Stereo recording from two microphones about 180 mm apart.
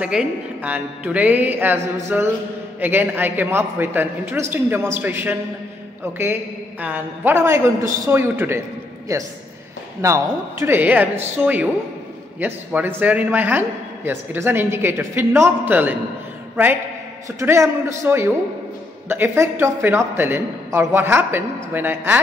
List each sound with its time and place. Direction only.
0.0 s a man's voice: 5° right (ahead or behind)
6.8 s a man's voice: 10° right (ahead or behind)
17.4 s a man's voice: 15° right (ahead or behind)